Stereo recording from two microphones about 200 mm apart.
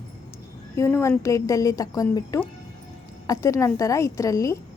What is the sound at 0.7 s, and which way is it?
A woman's voice, 15° left (ahead or behind).